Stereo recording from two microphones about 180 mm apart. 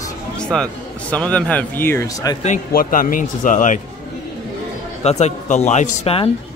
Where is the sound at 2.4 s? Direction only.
50° left (ahead or behind).